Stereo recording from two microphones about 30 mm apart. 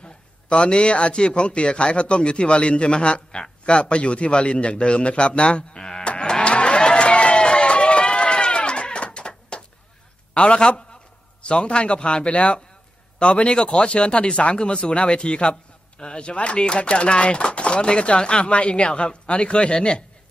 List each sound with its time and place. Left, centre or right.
0.0 s a man's voice: left
5.8 s sheep: left
6.0 s cattle: left
6.4 s a sound: left
6.8 s run: left
8.0 s a sound: left
10.3 s a man's voice: left